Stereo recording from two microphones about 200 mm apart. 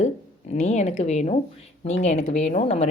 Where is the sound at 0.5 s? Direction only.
35° left (ahead or behind).